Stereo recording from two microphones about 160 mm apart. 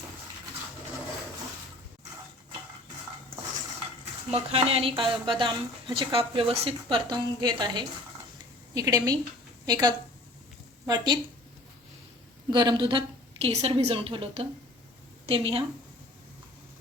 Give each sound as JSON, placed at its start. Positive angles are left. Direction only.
{"t": 4.3, "sound": "a woman's voice", "side_deg": -40}
{"t": 12.5, "sound": "a woman's voice", "side_deg": -30}